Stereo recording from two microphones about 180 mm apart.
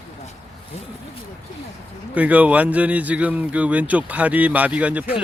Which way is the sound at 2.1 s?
10° right (ahead or behind).